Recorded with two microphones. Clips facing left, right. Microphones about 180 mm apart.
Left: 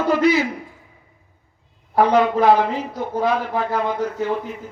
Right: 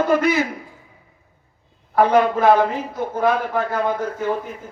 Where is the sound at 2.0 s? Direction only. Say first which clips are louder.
Even; 50° right (ahead or behind).